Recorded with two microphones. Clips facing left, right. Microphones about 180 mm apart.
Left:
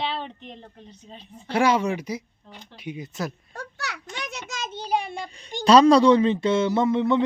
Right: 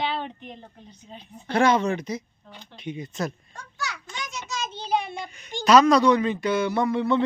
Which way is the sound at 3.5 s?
65° left (ahead or behind).